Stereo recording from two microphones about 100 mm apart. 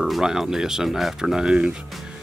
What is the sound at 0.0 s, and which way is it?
Speech, 5° right (ahead or behind).